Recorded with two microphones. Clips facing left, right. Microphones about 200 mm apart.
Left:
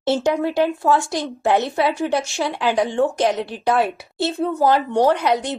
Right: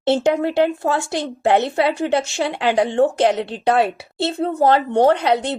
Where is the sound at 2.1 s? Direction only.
20° right (ahead or behind).